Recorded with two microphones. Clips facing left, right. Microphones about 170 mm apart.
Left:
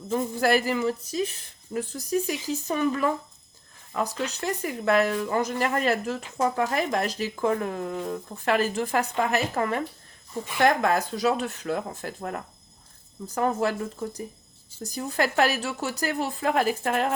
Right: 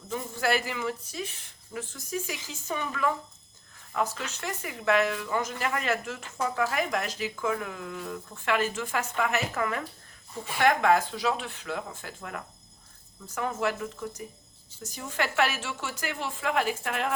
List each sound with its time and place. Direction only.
0.1 s speech: 40° left (ahead or behind)
4.3 s speech: 35° left (ahead or behind)